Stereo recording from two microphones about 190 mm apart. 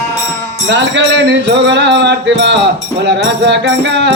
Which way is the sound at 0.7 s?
70° right (ahead or behind).